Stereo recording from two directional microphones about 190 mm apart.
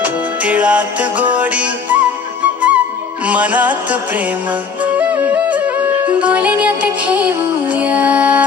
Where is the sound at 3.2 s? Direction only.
10° right (ahead or behind).